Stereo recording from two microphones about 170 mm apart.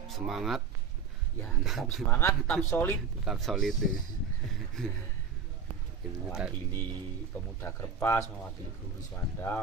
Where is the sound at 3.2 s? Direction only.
Centre (ahead or behind).